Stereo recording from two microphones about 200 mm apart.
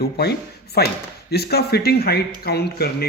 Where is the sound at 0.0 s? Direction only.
55° left (ahead or behind).